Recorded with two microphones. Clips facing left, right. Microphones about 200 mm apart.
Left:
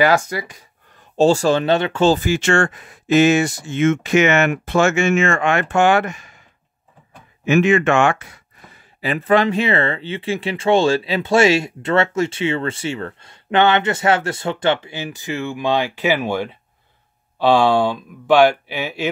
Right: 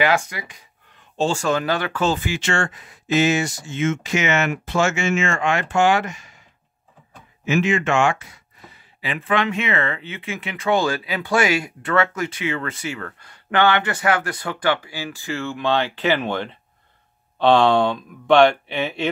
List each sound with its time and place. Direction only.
0.0 s speech: 40° left (ahead or behind)
2.1 s speech: 45° left (ahead or behind)
7.4 s speech: 60° left (ahead or behind)
9.0 s speech: 40° left (ahead or behind); by 19.0 s 5° left (ahead or behind)